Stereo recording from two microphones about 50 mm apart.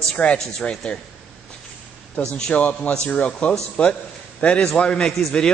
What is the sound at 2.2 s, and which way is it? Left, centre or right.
A man's voice, left.